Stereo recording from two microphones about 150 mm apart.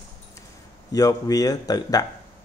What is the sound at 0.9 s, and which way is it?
Speech, 25° left (ahead or behind).